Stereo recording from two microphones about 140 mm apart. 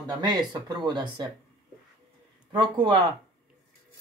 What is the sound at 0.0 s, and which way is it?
Speech, 30° right (ahead or behind).